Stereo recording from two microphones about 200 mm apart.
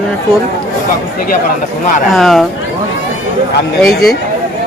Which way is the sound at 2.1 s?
Centre (ahead or behind).